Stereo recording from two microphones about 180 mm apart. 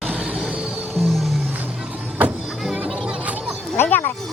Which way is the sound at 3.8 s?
10° left (ahead or behind).